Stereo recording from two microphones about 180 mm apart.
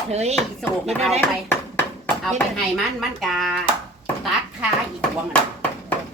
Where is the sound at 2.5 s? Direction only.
Centre (ahead or behind).